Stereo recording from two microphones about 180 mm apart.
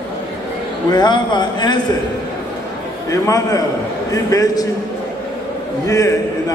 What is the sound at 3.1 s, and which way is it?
A man's voice, 20° left (ahead or behind).